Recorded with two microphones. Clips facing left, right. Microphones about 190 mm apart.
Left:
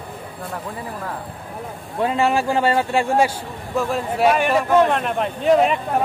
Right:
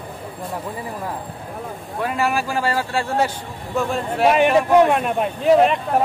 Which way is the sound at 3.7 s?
Centre (ahead or behind).